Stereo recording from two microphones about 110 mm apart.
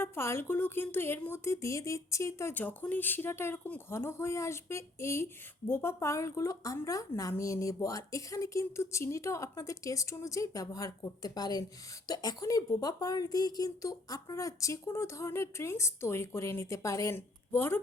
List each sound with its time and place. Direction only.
0.0 s speech: 25° left (ahead or behind)